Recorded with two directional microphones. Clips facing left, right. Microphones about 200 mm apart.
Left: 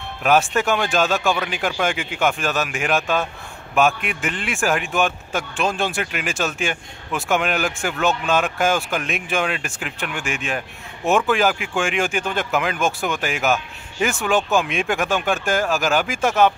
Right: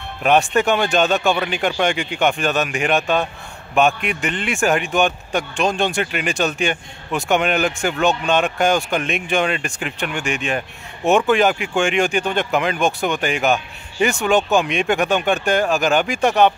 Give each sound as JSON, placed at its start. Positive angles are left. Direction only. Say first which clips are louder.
{"t": 0.2, "sound": "a man's voice", "louder": "right 2 dB", "side_deg": 0}